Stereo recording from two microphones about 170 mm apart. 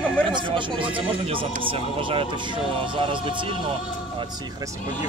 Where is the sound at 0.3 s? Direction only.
30° right (ahead or behind).